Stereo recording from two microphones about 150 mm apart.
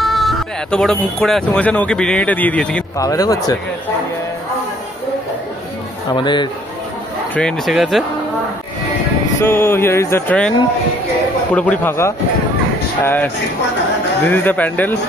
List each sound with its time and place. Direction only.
0.0 s speech: centre (ahead or behind)
3.0 s speech: 25° left (ahead or behind)
6.1 s a man's voice: 30° left (ahead or behind)
7.3 s speech: 5° left (ahead or behind)
9.4 s speech: 15° left (ahead or behind)
11.5 s speech: 10° left (ahead or behind)
14.3 s speech: 10° left (ahead or behind)